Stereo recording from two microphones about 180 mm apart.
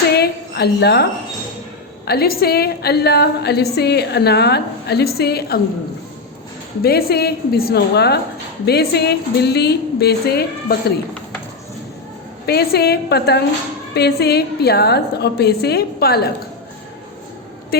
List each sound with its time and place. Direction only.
0.1 s a sound: 65° left (ahead or behind)
2.0 s a woman's voice: 60° left (ahead or behind)
6.8 s a woman's voice: 60° left (ahead or behind)
12.5 s a woman's voice: 60° left (ahead or behind)